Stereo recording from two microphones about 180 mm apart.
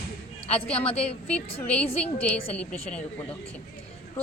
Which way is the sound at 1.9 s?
35° left (ahead or behind).